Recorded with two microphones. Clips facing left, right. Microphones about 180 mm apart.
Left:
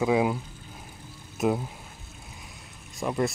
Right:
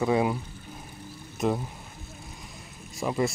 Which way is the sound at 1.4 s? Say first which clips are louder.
Left 1 dB; 5° left (ahead or behind).